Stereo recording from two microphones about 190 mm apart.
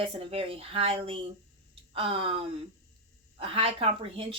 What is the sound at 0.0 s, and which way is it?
Speech, 30° right (ahead or behind).